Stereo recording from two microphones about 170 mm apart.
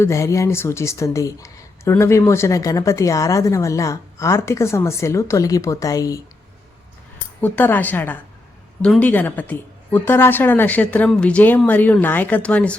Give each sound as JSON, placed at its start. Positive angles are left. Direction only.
{"t": 0.0, "sound": "speech", "side_deg": 15}
{"t": 7.4, "sound": "speech", "side_deg": 10}